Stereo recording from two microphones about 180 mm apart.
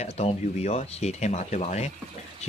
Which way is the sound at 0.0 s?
35° left (ahead or behind).